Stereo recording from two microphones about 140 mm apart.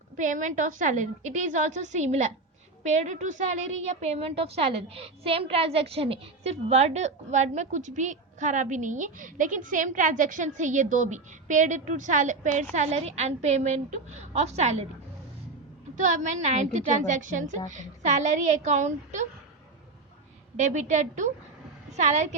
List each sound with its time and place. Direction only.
0.2 s a woman's voice: 65° right (ahead or behind)
16.0 s a woman's voice: 55° right (ahead or behind)
20.6 s a woman's voice: 55° right (ahead or behind)